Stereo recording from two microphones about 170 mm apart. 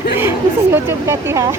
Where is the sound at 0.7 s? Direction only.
15° right (ahead or behind).